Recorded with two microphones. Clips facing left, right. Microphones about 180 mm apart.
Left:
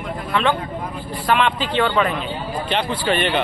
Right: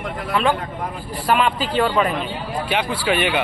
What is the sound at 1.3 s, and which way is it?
Speech, 5° right (ahead or behind).